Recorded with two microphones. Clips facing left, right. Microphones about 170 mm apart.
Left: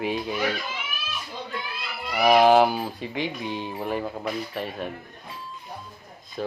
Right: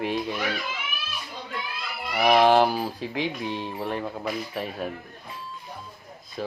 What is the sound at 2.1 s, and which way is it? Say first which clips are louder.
Speech: left 2 dB; centre (ahead or behind).